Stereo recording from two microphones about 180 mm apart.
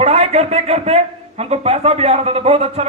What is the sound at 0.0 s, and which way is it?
A man's voice, 35° right (ahead or behind).